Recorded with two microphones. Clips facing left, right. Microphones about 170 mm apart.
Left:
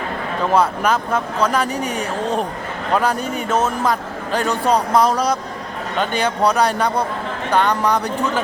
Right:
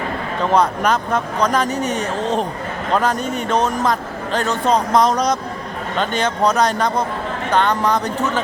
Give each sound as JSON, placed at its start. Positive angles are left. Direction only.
{"t": 0.5, "sound": "a man's voice", "side_deg": 5}